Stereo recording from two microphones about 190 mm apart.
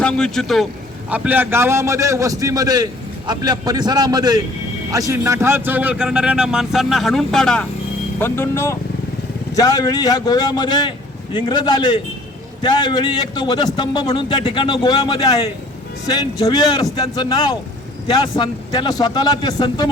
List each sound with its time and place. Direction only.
0.0 s a man's voice: 5° left (ahead or behind)
8.2 s speech: 15° left (ahead or behind)
16.4 s speech: 20° left (ahead or behind)